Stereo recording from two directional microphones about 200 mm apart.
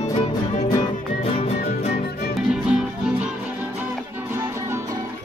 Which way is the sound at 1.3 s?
35° left (ahead or behind).